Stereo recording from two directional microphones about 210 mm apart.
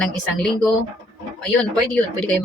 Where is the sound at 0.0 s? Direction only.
5° left (ahead or behind).